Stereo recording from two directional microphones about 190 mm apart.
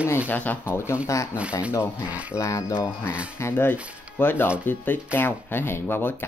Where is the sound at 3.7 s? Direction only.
5° right (ahead or behind).